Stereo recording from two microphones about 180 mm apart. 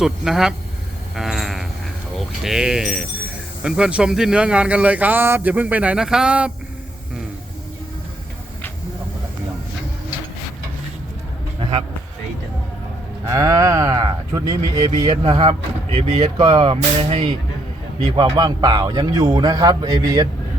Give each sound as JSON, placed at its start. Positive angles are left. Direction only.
{"t": 0.0, "sound": "speech", "side_deg": 0}
{"t": 1.1, "sound": "sheep", "side_deg": 0}
{"t": 2.1, "sound": "speech", "side_deg": 0}
{"t": 11.6, "sound": "a sound", "side_deg": -30}
{"t": 13.2, "sound": "a man's voice", "side_deg": -20}
{"t": 15.2, "sound": "speech", "side_deg": -30}
{"t": 16.4, "sound": "a man's voice", "side_deg": -20}